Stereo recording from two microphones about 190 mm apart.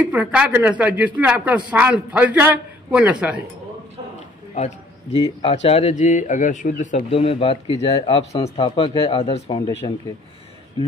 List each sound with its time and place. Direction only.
0.1 s speech: 5° right (ahead or behind)
4.6 s a man's voice: 35° left (ahead or behind)